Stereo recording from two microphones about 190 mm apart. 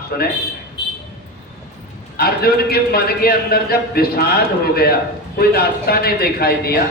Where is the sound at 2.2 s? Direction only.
55° left (ahead or behind).